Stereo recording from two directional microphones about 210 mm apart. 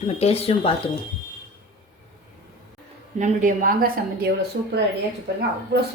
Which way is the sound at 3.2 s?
40° right (ahead or behind).